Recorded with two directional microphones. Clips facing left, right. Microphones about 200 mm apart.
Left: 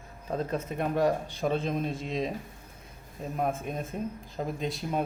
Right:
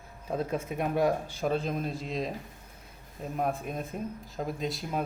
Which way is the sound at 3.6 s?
Centre (ahead or behind).